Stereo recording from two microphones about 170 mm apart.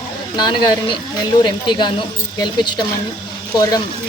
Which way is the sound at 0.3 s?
25° left (ahead or behind).